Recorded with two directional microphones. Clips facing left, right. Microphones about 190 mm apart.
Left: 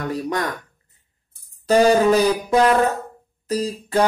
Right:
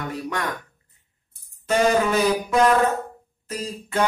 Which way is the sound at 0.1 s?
35° left (ahead or behind).